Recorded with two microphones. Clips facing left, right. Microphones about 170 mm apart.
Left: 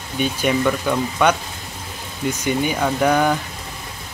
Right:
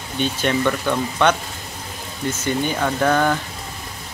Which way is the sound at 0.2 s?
10° left (ahead or behind).